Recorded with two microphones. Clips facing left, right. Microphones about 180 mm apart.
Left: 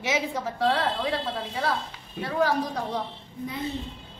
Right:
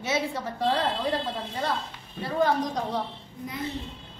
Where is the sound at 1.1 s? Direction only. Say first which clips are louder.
Even; 90° left.